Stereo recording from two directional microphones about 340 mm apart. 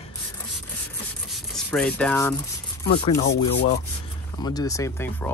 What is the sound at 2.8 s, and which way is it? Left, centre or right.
Speech, centre.